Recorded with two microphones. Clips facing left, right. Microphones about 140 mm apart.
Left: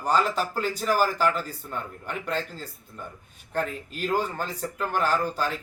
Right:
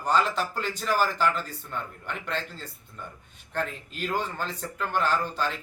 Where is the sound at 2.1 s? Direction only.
40° left (ahead or behind).